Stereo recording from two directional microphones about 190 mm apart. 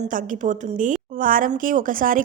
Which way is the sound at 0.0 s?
45° right (ahead or behind).